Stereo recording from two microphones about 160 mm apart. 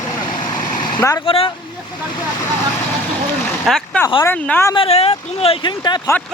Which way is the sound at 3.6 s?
Centre (ahead or behind).